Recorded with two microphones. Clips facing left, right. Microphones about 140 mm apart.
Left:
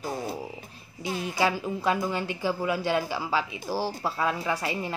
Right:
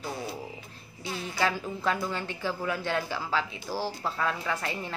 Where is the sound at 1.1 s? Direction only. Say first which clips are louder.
Left 3 dB; 15° left (ahead or behind).